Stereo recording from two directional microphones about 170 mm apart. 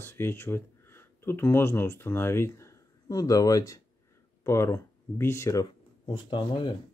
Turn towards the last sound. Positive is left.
turn(degrees=30)  # may be behind; listen again after turning